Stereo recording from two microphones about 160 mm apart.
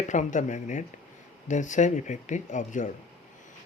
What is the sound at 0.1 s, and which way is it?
Speech, 50° left (ahead or behind).